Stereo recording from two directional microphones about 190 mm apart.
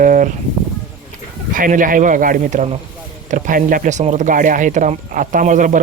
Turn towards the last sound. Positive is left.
turn(degrees=-45)  # may be behind; listen again after turning